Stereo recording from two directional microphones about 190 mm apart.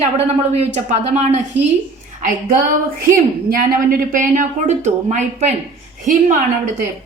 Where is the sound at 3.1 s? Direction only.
45° right (ahead or behind).